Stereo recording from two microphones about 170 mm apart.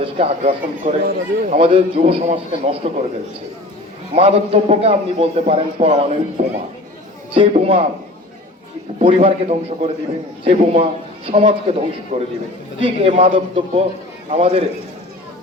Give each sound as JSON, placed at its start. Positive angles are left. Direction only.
{"t": 0.0, "sound": "a man's voice", "side_deg": -35}
{"t": 1.0, "sound": "speech", "side_deg": -55}
{"t": 1.5, "sound": "a man's voice", "side_deg": -35}
{"t": 4.1, "sound": "a man's voice", "side_deg": -35}
{"t": 9.0, "sound": "a man's voice", "side_deg": -35}